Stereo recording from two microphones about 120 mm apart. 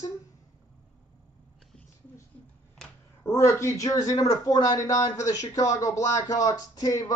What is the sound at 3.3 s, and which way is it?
A man's voice, 25° left (ahead or behind).